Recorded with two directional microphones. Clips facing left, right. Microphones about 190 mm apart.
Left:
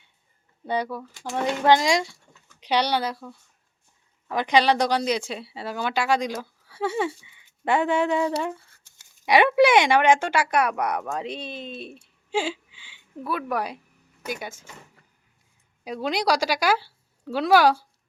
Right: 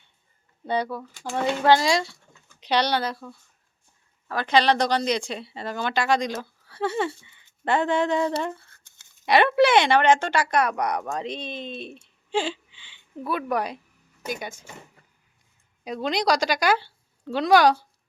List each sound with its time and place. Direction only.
0.7 s a woman's voice: 10° left (ahead or behind)
15.8 s a woman's voice: 5° left (ahead or behind)